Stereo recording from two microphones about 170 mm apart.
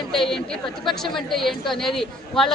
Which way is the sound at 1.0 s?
Centre (ahead or behind).